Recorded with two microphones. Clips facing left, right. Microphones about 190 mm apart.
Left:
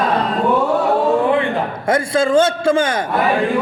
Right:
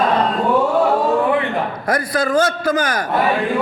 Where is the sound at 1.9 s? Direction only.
25° left (ahead or behind).